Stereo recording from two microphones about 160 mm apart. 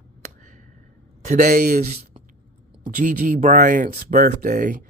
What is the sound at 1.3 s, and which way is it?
Speech, 50° right (ahead or behind).